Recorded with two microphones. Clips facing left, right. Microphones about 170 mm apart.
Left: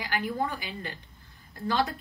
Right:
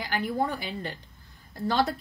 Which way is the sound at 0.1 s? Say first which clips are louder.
Right 2 dB; 35° right (ahead or behind).